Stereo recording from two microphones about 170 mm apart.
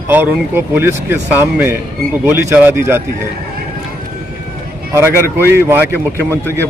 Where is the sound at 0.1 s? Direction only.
10° right (ahead or behind).